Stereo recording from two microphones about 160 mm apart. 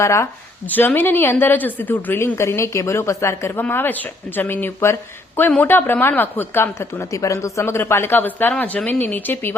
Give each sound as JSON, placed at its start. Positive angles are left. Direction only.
{"t": 0.0, "sound": "a woman's voice", "side_deg": 20}